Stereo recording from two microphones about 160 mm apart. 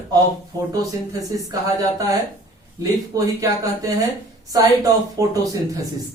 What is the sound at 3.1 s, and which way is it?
Speech, 20° right (ahead or behind).